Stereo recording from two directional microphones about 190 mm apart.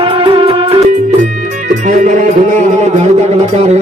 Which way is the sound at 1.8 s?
45° right (ahead or behind).